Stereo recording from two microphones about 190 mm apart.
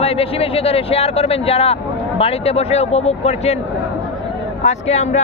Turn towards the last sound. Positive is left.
turn(degrees=35)  # may be behind; listen again after turning